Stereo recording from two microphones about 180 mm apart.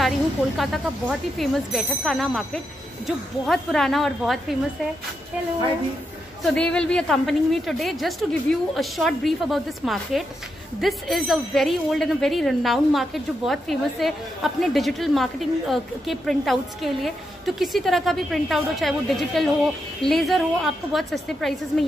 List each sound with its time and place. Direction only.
0.6 s a woman's voice: centre (ahead or behind)
6.4 s a woman's voice: 5° left (ahead or behind)